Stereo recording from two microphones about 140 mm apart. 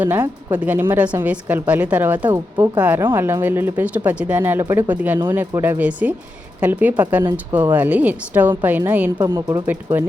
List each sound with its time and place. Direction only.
0.0 s speech: 15° right (ahead or behind)